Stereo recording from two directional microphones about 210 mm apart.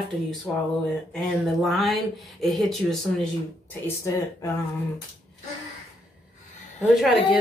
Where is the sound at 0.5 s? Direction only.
Centre (ahead or behind).